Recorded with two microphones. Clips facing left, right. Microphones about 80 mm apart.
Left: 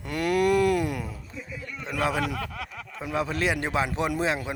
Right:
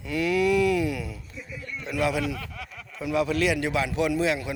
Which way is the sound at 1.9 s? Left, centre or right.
Left.